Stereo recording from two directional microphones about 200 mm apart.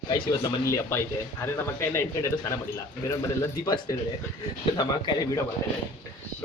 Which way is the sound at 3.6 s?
20° left (ahead or behind).